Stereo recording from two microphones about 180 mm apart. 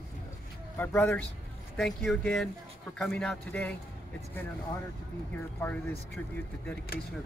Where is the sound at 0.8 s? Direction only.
10° left (ahead or behind).